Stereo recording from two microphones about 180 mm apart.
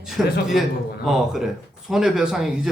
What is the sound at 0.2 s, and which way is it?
Speech, centre (ahead or behind).